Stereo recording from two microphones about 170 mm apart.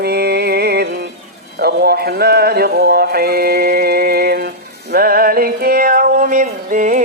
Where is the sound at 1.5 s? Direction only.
70° right (ahead or behind).